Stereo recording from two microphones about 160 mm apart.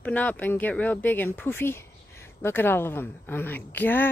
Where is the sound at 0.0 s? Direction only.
10° left (ahead or behind).